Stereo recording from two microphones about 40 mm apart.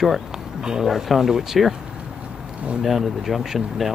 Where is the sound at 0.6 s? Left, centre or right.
Centre.